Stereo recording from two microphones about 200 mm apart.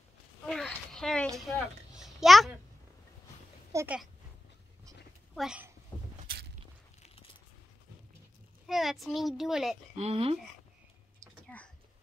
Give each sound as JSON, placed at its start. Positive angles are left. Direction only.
{"t": 0.5, "sound": "a sound", "side_deg": 5}
{"t": 3.7, "sound": "a child's voice", "side_deg": -5}
{"t": 5.3, "sound": "speech", "side_deg": -5}
{"t": 8.6, "sound": "a child's voice", "side_deg": 0}
{"t": 9.9, "sound": "speech", "side_deg": -30}
{"t": 11.4, "sound": "a sound", "side_deg": 5}